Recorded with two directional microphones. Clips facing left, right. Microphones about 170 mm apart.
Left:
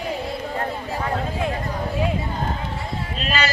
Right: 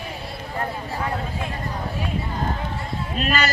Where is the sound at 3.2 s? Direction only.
50° right (ahead or behind).